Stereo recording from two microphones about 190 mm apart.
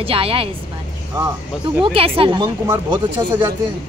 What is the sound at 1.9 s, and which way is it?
Speech, 30° right (ahead or behind).